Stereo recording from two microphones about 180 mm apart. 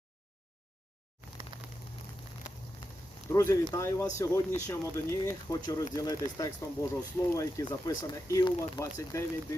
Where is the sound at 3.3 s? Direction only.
15° left (ahead or behind).